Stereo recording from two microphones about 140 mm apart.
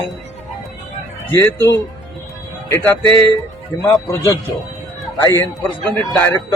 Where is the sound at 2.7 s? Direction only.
15° left (ahead or behind).